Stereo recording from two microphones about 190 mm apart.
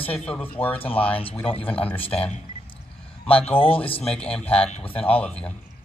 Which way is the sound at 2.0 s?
30° left (ahead or behind).